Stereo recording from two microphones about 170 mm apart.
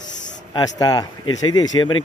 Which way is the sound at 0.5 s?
20° left (ahead or behind).